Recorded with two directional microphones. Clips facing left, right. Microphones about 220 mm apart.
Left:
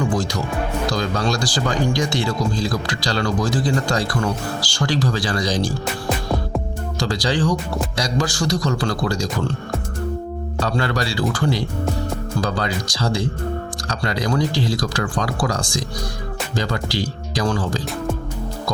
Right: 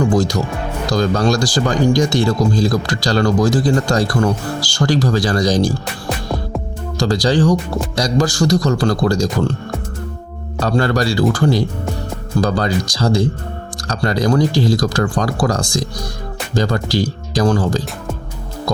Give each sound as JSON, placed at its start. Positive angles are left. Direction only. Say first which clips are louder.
{"t": 0.1, "sound": "speech", "louder": "right 6 dB", "side_deg": -40}
{"t": 7.0, "sound": "speech", "louder": "right 6 dB", "side_deg": -40}
{"t": 10.6, "sound": "speech", "louder": "right 6 dB", "side_deg": -45}